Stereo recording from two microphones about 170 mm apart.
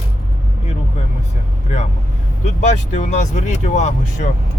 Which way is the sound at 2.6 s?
45° left (ahead or behind).